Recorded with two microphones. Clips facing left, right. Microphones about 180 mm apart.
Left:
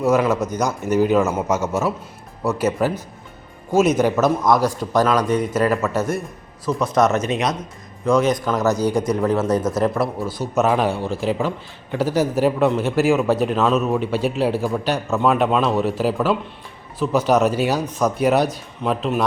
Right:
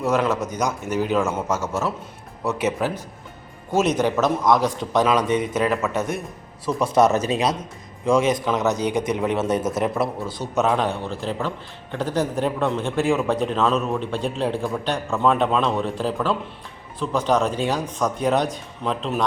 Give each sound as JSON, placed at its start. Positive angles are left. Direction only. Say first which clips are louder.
{"t": 0.0, "sound": "a man's voice", "louder": "left 4 dB", "side_deg": 5}
{"t": 6.8, "sound": "a man's voice", "louder": "even", "side_deg": -30}
{"t": 8.4, "sound": "speech", "louder": "left 2 dB", "side_deg": 0}
{"t": 8.8, "sound": "a man's voice", "louder": "left 3 dB", "side_deg": -20}
{"t": 9.8, "sound": "speech", "louder": "left 3 dB", "side_deg": 0}
{"t": 10.2, "sound": "a man's voice", "louder": "left 4 dB", "side_deg": -20}
{"t": 10.5, "sound": "speech", "louder": "left 2 dB", "side_deg": 5}